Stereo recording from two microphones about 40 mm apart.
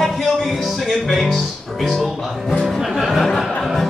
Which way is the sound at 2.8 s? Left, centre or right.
Centre.